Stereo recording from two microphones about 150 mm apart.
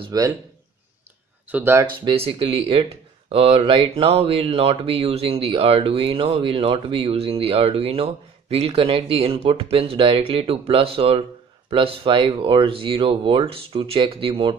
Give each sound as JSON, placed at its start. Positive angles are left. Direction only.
{"t": 0.0, "sound": "speech", "side_deg": -25}
{"t": 1.5, "sound": "speech", "side_deg": -15}
{"t": 2.0, "sound": "speech", "side_deg": -35}